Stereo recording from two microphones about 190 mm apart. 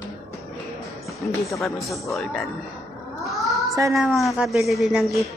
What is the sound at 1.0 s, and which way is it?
Music, centre (ahead or behind).